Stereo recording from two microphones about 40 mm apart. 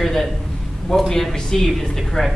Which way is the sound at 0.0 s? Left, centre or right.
Centre.